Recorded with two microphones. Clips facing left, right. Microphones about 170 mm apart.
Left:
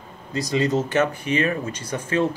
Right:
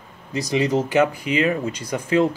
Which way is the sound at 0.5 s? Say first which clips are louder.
Right 2 dB; 15° right (ahead or behind).